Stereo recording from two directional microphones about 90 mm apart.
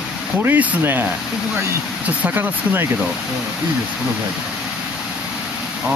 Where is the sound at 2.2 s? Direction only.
20° right (ahead or behind).